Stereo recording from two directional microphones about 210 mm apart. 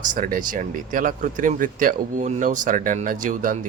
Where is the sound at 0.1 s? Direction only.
40° right (ahead or behind).